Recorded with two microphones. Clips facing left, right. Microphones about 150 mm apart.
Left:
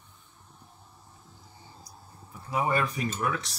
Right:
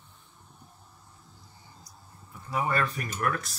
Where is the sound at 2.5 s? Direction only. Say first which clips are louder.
Left 1 dB; 15° left (ahead or behind).